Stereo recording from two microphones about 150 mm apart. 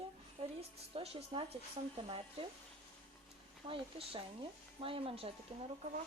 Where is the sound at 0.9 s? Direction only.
40° right (ahead or behind).